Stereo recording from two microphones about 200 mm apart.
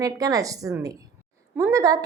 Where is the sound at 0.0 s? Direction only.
15° right (ahead or behind).